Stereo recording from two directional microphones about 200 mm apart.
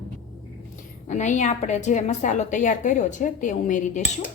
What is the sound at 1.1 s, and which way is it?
A woman's voice, 35° left (ahead or behind).